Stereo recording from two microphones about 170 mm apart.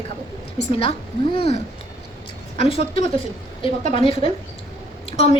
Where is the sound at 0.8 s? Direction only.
35° left (ahead or behind).